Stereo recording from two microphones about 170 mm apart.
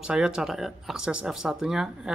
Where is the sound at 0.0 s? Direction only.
5° right (ahead or behind).